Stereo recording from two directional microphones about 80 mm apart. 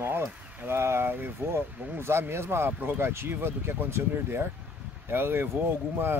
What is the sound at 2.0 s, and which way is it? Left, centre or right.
Speech, right.